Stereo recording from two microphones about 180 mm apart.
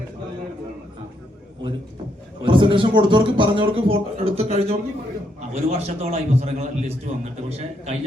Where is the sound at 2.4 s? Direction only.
25° right (ahead or behind).